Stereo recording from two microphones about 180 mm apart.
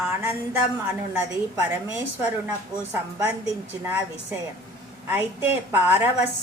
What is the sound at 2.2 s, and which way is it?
Speech, 10° right (ahead or behind).